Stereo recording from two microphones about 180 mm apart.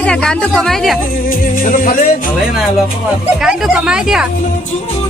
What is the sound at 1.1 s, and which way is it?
Music, 50° left (ahead or behind).